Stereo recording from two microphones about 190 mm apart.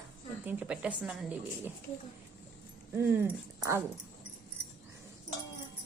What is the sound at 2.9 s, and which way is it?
Speech, 10° right (ahead or behind).